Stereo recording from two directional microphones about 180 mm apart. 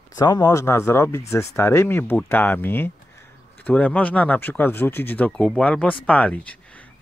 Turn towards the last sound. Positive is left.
turn(degrees=5)  # may be behind; listen again after turning